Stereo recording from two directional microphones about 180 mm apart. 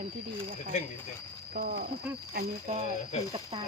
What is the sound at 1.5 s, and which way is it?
Speech, 55° right (ahead or behind).